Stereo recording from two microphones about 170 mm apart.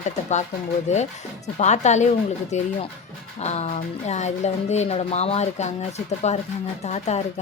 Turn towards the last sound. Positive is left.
turn(degrees=40)  # may be behind; listen again after turning